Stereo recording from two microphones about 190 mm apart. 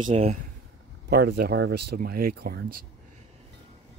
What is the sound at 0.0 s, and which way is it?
Speech, 30° right (ahead or behind).